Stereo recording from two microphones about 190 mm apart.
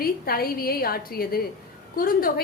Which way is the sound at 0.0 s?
50° left (ahead or behind).